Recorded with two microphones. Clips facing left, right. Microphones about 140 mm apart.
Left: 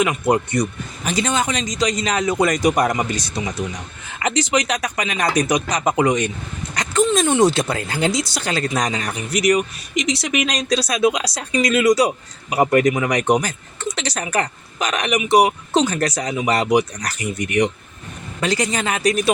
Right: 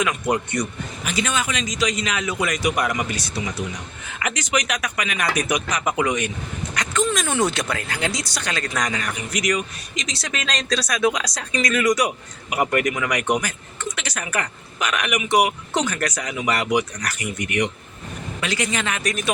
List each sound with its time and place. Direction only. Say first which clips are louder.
0.0 s a man's voice: left 4 dB; 30° left (ahead or behind)